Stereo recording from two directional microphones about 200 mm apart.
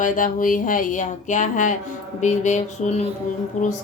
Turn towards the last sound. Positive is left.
turn(degrees=40)  # may be behind; listen again after turning